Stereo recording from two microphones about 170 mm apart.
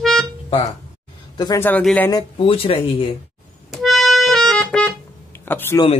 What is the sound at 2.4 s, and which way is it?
Speech, 35° left (ahead or behind).